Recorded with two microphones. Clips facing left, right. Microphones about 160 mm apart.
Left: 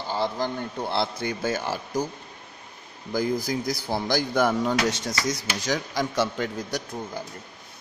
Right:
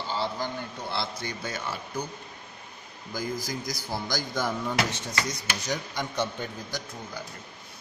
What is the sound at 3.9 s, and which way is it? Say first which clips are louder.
Speech: left 7 dB; 60° left (ahead or behind).